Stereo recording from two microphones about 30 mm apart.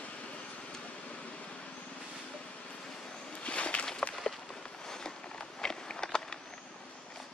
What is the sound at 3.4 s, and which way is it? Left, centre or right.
Walk, left.